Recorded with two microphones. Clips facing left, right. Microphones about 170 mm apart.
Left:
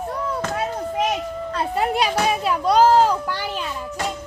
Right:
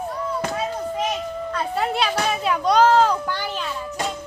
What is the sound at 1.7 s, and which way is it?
A child's voice, 10° left (ahead or behind).